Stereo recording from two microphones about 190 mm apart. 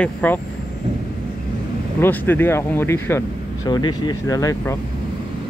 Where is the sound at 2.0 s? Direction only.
10° left (ahead or behind).